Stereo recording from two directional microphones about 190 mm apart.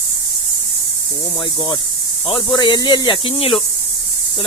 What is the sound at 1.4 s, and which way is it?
Speech, 25° left (ahead or behind).